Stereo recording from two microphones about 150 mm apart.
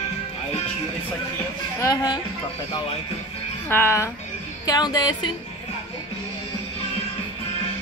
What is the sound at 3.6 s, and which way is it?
A child's voice, 15° left (ahead or behind).